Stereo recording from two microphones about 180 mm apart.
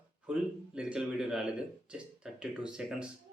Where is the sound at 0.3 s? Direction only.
5° right (ahead or behind).